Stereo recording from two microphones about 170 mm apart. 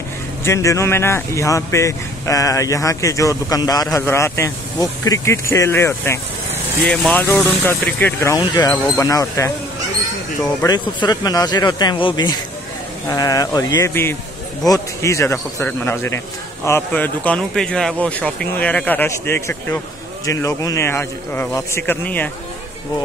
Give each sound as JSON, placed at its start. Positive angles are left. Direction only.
{"t": 0.4, "sound": "speech", "side_deg": 15}
{"t": 6.8, "sound": "speech", "side_deg": 5}
{"t": 10.6, "sound": "speech", "side_deg": 25}